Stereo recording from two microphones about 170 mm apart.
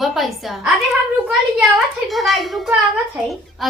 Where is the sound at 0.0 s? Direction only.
Centre (ahead or behind).